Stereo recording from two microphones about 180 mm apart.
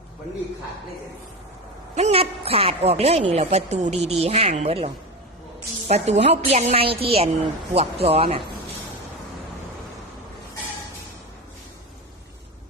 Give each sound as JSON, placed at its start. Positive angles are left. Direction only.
{"t": 2.0, "sound": "a woman's voice", "side_deg": -35}
{"t": 5.9, "sound": "a woman's voice", "side_deg": -40}